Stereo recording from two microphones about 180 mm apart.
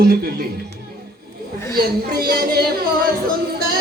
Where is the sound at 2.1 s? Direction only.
55° right (ahead or behind).